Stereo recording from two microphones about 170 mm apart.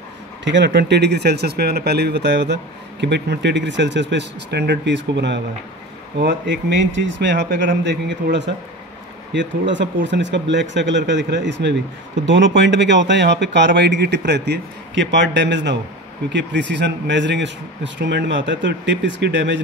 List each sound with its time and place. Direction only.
0.5 s speech: 90° right